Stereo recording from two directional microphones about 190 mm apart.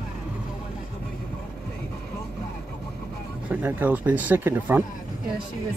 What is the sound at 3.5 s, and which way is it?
Speech, 10° right (ahead or behind).